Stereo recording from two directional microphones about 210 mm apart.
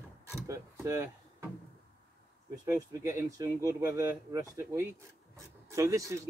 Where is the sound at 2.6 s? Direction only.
15° right (ahead or behind).